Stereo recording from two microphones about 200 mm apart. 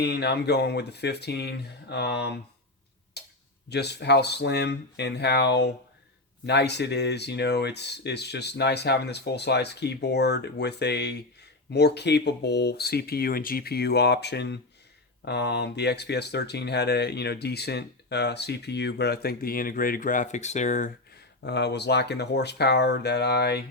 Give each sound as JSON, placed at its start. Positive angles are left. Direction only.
{"t": 0.0, "sound": "speech", "side_deg": 55}
{"t": 3.2, "sound": "tick-tock", "side_deg": 55}
{"t": 3.7, "sound": "speech", "side_deg": 55}
{"t": 21.4, "sound": "speech", "side_deg": 55}